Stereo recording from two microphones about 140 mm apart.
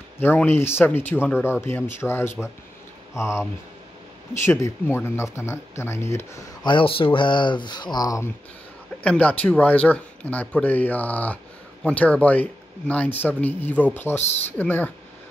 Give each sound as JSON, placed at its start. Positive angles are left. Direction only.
{"t": 0.2, "sound": "speech", "side_deg": 15}
{"t": 4.5, "sound": "speech", "side_deg": 20}
{"t": 6.6, "sound": "speech", "side_deg": 35}
{"t": 9.0, "sound": "speech", "side_deg": 10}